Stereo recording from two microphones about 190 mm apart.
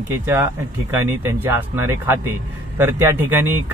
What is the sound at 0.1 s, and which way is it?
A man's voice, 15° right (ahead or behind).